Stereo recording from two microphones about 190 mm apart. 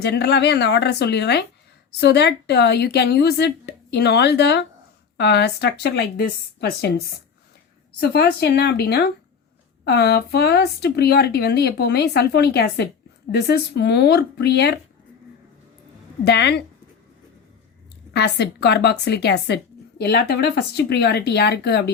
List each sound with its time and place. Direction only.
0.0 s speech: 60° left (ahead or behind)
16.2 s speech: 60° left (ahead or behind)
18.1 s speech: 60° left (ahead or behind)